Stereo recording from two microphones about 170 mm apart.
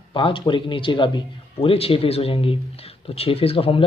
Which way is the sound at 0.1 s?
30° left (ahead or behind).